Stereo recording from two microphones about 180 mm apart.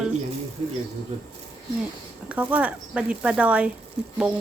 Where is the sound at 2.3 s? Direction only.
10° right (ahead or behind).